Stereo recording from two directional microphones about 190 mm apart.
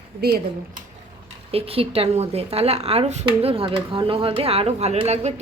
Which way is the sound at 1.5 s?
30° right (ahead or behind).